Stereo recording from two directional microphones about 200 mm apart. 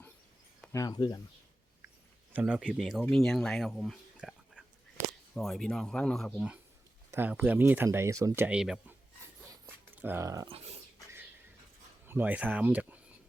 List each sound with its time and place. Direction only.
0.7 s speech: 15° left (ahead or behind)
2.3 s speech: 5° right (ahead or behind)
12.0 s speech: 10° right (ahead or behind)